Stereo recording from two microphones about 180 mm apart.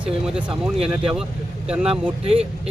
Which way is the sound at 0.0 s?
5° right (ahead or behind).